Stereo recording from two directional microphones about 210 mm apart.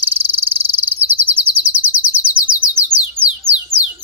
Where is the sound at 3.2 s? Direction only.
25° right (ahead or behind).